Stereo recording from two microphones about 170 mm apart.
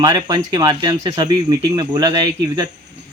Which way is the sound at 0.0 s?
25° right (ahead or behind).